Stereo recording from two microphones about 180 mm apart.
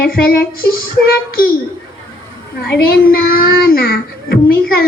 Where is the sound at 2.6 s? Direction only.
55° left (ahead or behind).